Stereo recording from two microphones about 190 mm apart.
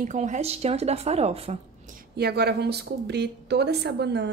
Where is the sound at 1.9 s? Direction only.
55° right (ahead or behind).